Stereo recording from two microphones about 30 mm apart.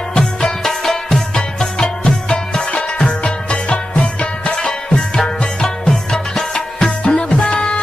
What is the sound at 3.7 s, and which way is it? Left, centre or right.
Music, left.